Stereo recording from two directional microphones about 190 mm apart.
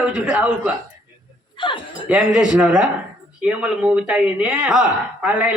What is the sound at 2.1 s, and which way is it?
Speech, 5° right (ahead or behind).